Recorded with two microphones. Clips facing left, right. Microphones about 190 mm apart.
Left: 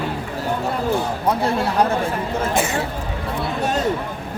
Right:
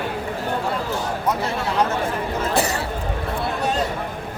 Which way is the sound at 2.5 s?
35° right (ahead or behind).